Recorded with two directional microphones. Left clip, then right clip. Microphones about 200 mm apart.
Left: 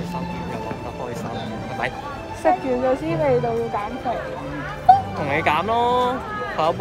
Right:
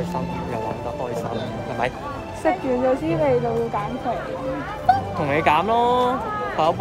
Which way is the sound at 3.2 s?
10° right (ahead or behind).